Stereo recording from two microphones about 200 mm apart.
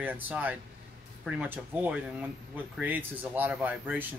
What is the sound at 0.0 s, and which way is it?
Speech, 10° right (ahead or behind).